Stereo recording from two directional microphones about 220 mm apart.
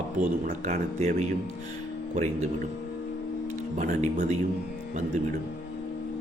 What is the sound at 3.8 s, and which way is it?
Speech, 35° right (ahead or behind).